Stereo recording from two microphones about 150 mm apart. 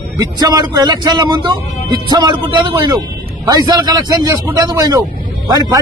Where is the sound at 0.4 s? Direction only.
25° right (ahead or behind).